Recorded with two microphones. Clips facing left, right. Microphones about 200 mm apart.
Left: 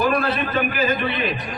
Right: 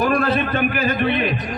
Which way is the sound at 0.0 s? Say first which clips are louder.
Right 2 dB; 45° right (ahead or behind).